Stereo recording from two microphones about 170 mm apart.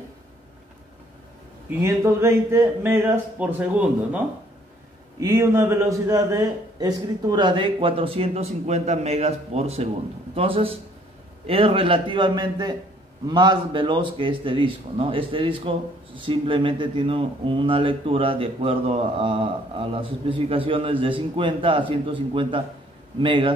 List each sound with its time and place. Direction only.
1.8 s speech: 15° right (ahead or behind)
5.2 s a man's voice: 15° right (ahead or behind)